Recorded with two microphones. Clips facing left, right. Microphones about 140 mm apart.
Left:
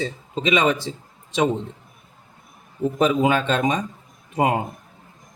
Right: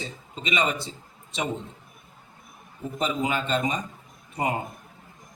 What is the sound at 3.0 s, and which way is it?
Speech, 90° left.